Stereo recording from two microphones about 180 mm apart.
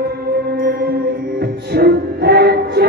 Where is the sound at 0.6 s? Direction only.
60° right (ahead or behind).